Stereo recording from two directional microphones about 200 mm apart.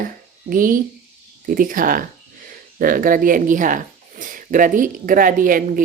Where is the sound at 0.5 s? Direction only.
45° right (ahead or behind).